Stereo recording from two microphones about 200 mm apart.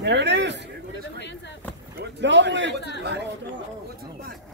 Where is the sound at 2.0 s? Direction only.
60° right (ahead or behind).